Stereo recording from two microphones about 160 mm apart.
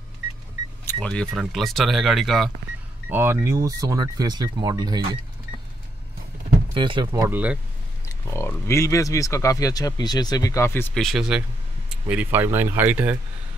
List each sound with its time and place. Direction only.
0.9 s speech: 5° left (ahead or behind)
3.1 s speech: 15° right (ahead or behind)
6.7 s speech: 30° right (ahead or behind)
7.1 s speech: 15° right (ahead or behind)
8.1 s speech: 15° left (ahead or behind)
11.0 s speech: centre (ahead or behind)